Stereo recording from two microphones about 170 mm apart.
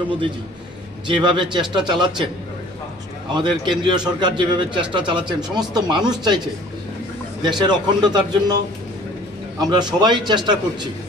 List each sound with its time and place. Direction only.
1.0 s speech: 30° right (ahead or behind)
3.3 s speech: 30° right (ahead or behind)
7.4 s speech: 25° right (ahead or behind)
9.6 s speech: 25° right (ahead or behind)